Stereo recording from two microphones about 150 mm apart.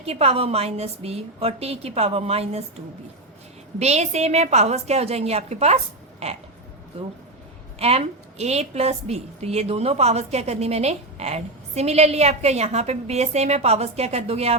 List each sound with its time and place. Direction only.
0.0 s a woman's voice: 40° right (ahead or behind)
3.8 s a woman's voice: 45° right (ahead or behind)
7.8 s a woman's voice: 45° right (ahead or behind)